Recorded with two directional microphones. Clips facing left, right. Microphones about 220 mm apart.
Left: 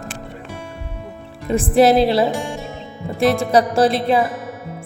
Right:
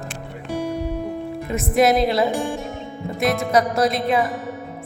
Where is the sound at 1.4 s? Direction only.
30° left (ahead or behind).